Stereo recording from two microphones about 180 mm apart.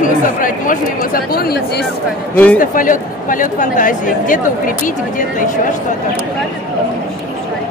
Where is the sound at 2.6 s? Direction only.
50° left (ahead or behind).